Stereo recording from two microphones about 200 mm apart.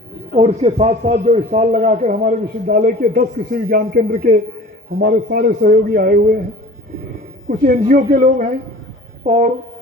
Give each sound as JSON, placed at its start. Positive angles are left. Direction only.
{"t": 0.3, "sound": "a man's voice", "side_deg": -30}
{"t": 7.4, "sound": "a man's voice", "side_deg": -40}